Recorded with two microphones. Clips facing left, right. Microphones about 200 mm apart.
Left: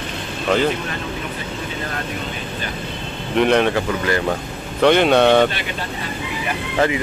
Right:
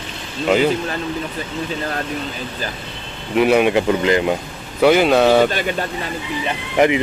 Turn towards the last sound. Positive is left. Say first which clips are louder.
# right 4 dB
turn(degrees=-15)  # may be behind; listen again after turning